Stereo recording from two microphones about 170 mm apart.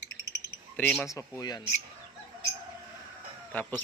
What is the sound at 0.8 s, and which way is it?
Speech, 5° left (ahead or behind).